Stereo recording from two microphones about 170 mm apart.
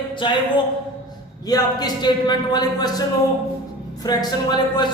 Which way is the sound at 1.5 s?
25° left (ahead or behind).